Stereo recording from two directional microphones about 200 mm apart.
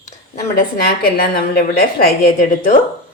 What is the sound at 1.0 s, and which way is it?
A woman's voice, 50° left (ahead or behind).